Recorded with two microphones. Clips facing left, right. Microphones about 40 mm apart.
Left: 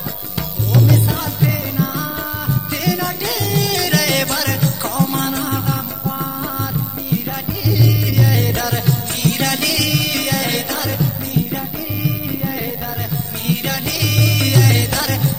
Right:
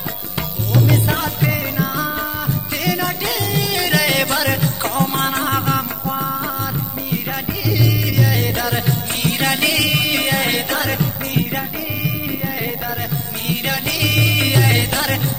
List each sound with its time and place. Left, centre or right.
0.7 s music: right
1.0 s music: right
1.4 s music: right
4.8 s music: right
8.2 s music: centre; by 11.1 s right
13.5 s music: right